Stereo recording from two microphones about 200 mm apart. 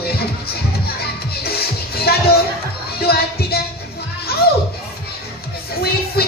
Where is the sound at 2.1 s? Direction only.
50° left (ahead or behind).